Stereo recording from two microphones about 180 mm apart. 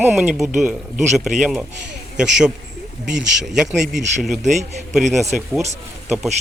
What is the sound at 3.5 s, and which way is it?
Speech, centre (ahead or behind).